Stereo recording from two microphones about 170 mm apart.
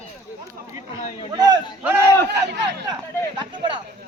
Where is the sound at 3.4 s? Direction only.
25° right (ahead or behind).